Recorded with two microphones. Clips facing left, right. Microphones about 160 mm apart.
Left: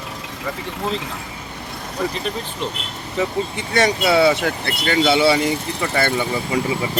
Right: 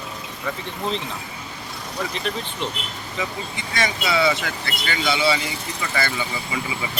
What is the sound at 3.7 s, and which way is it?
Speech, 65° left (ahead or behind).